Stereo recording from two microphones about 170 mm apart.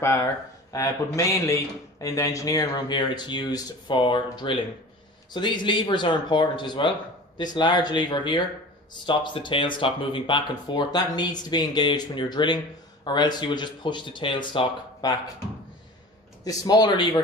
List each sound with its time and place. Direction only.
0.0 s a man's voice: 15° left (ahead or behind)
16.4 s a man's voice: 20° left (ahead or behind)